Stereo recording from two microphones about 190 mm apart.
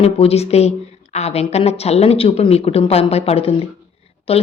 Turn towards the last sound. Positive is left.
turn(degrees=30)  # may be behind; listen again after turning